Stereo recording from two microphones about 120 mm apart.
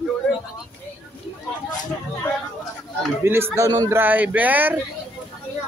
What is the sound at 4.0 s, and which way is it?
Speech, 15° right (ahead or behind).